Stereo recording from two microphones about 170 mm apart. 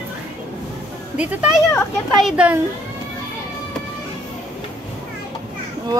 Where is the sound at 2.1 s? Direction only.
5° right (ahead or behind).